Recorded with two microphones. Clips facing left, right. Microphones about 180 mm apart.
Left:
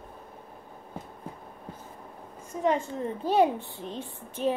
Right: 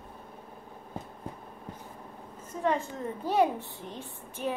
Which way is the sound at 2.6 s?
20° left (ahead or behind).